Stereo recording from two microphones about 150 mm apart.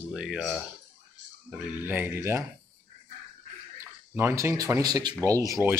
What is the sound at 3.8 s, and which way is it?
Speech, 20° right (ahead or behind).